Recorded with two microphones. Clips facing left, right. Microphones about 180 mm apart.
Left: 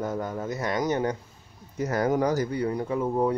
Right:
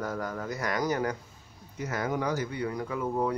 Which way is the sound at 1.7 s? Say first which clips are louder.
Left 7 dB; 40° left (ahead or behind).